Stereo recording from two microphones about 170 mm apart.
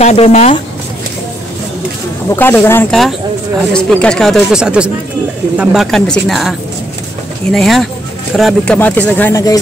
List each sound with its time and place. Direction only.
0.0 s speech: 40° left (ahead or behind)
2.3 s speech: 10° left (ahead or behind)
2.9 s speech: centre (ahead or behind)
7.5 s speech: centre (ahead or behind)
8.7 s speech: 10° left (ahead or behind)